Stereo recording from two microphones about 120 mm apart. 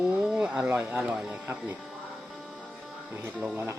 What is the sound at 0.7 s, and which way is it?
Speech, 20° right (ahead or behind).